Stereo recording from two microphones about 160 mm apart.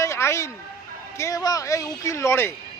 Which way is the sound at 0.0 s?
15° left (ahead or behind).